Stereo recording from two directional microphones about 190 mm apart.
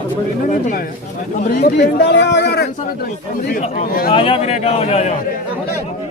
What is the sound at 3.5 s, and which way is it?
Speech, 40° left (ahead or behind).